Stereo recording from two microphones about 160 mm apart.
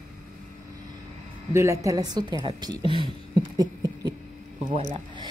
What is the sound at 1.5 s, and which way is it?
Speech, 20° right (ahead or behind).